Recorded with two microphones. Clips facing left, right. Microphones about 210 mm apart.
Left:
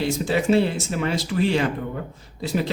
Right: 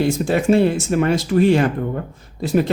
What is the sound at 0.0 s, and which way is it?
Speech, 50° right (ahead or behind).